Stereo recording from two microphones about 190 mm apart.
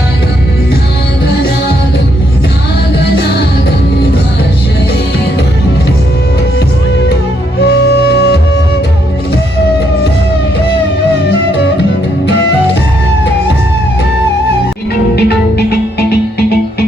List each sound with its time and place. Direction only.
7.6 s music: 60° left (ahead or behind)
15.1 s music: 60° left (ahead or behind)